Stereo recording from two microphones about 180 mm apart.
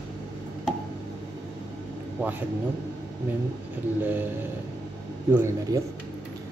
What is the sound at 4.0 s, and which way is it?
Speech, 10° right (ahead or behind).